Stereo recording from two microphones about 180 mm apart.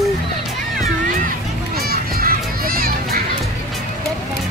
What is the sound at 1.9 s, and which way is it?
Children playing, 55° right (ahead or behind).